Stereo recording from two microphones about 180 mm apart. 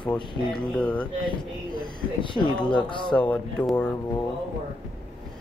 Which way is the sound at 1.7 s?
25° left (ahead or behind).